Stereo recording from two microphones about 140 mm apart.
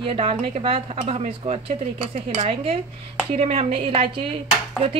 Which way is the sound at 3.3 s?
50° right (ahead or behind).